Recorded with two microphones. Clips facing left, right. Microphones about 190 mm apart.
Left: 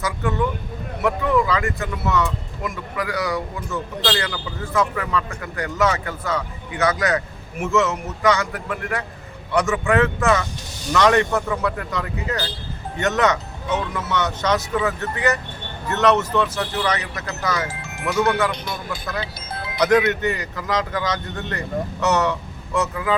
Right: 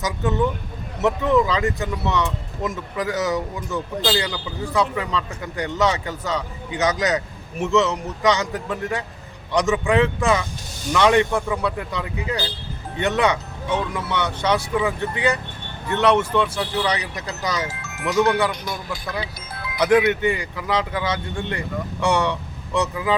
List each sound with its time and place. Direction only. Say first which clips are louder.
0.0 s speech: right 1 dB; 20° right (ahead or behind)
19.5 s music: left 2 dB; 25° left (ahead or behind)
19.8 s speech: right 1 dB; 10° right (ahead or behind)